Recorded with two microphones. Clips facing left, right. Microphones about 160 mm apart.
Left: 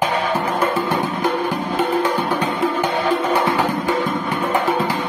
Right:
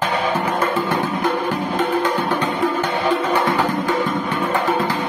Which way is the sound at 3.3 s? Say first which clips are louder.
Even; 10° left (ahead or behind).